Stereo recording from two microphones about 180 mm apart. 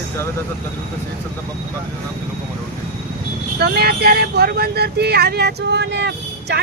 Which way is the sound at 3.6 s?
60° right (ahead or behind).